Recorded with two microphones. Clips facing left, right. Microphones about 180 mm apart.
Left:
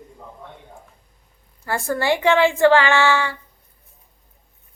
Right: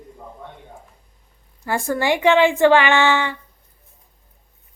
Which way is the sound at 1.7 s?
15° right (ahead or behind).